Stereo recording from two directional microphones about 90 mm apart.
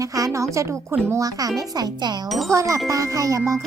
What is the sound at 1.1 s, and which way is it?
A child's voice, 40° right (ahead or behind).